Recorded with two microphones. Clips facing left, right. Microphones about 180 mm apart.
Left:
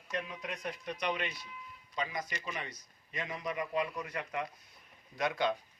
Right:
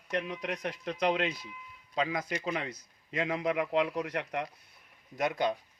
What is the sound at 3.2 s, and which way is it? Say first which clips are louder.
Speech: right 7 dB; 90° right.